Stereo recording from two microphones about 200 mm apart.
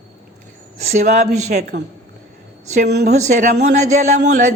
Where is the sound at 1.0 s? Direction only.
35° right (ahead or behind).